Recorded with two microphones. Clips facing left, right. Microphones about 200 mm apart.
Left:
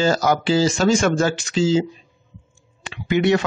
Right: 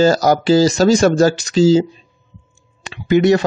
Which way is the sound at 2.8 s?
40° right (ahead or behind).